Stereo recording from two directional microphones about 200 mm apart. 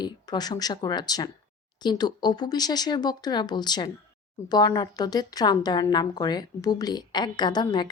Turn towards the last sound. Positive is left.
turn(degrees=20)  # may be behind; listen again after turning